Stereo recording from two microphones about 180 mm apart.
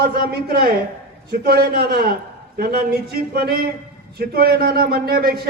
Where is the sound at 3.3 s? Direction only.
55° right (ahead or behind).